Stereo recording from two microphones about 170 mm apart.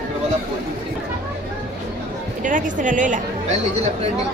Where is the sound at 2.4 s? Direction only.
50° right (ahead or behind).